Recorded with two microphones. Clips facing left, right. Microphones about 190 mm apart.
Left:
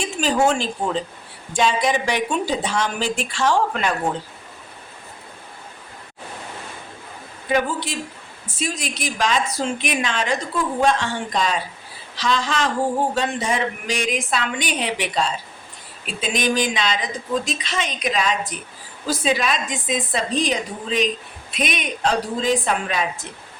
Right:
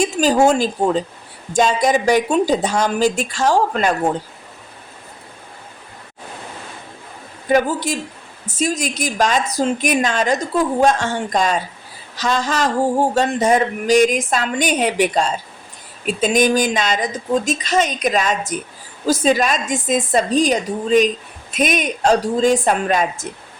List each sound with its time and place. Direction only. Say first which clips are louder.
0.0 s speech: right 5 dB; 40° right (ahead or behind)
7.4 s a woman's voice: right 5 dB; 45° right (ahead or behind)